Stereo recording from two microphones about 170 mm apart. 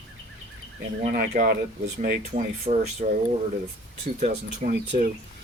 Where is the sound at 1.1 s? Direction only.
60° right (ahead or behind).